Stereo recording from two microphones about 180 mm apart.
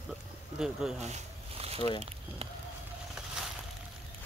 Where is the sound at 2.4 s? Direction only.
35° right (ahead or behind).